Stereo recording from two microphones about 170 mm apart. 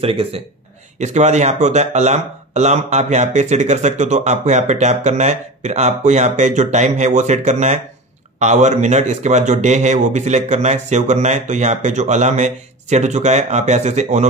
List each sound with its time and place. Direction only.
0.0 s speech: 35° right (ahead or behind)